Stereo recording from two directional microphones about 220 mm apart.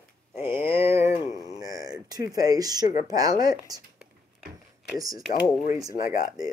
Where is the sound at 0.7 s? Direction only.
10° right (ahead or behind).